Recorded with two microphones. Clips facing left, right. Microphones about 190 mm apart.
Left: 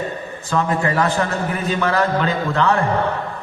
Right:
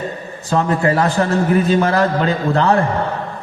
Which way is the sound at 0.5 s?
35° right (ahead or behind).